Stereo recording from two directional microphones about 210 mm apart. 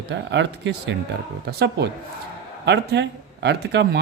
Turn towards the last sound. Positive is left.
turn(degrees=-55)  # may be behind; listen again after turning